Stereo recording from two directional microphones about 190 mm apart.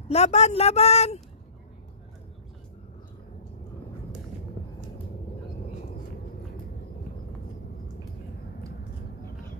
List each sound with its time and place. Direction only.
0.1 s speech: 35° left (ahead or behind)